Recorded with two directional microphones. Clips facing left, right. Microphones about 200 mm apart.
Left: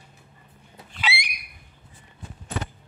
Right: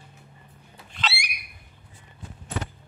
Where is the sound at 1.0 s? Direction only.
20° left (ahead or behind).